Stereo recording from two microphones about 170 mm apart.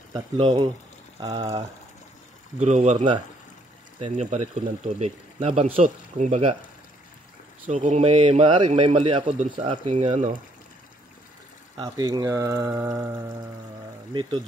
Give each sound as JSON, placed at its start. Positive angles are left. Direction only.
{"t": 0.1, "sound": "speech", "side_deg": -30}
{"t": 2.6, "sound": "speech", "side_deg": -40}
{"t": 7.8, "sound": "speech", "side_deg": -35}
{"t": 11.7, "sound": "speech", "side_deg": -25}